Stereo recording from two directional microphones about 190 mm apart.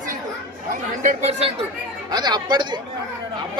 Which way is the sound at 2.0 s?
20° right (ahead or behind).